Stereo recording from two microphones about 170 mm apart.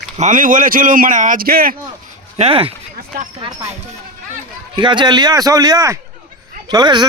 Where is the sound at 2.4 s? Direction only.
35° right (ahead or behind).